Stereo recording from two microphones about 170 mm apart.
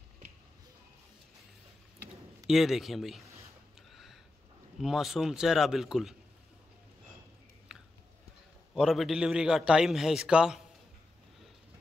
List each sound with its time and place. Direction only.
2.4 s a man's voice: centre (ahead or behind)
3.9 s a sound: centre (ahead or behind)
4.7 s a man's voice: centre (ahead or behind)
7.7 s biting: 5° right (ahead or behind)
8.7 s a man's voice: centre (ahead or behind)